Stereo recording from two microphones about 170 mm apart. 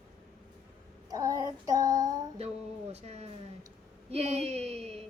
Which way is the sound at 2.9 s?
40° right (ahead or behind).